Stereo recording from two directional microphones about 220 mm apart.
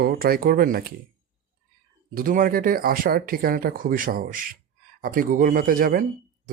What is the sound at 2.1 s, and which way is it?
Speech, 40° right (ahead or behind).